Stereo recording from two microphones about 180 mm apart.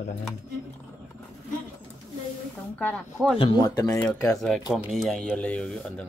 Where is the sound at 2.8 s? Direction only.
5° left (ahead or behind).